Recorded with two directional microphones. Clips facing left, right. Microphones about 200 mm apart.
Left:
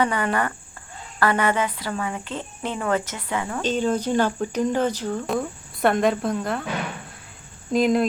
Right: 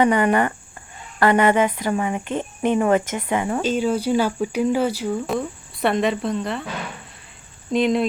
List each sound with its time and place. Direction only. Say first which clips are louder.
0.0 s speech: right 5 dB; 20° right (ahead or behind)
3.6 s speech: right 2 dB; 10° right (ahead or behind)
7.7 s speech: even; centre (ahead or behind)